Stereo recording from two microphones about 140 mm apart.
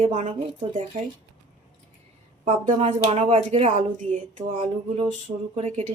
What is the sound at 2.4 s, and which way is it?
Speech, 45° right (ahead or behind).